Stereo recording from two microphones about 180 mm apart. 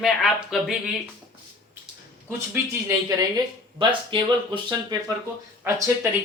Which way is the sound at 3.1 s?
25° right (ahead or behind).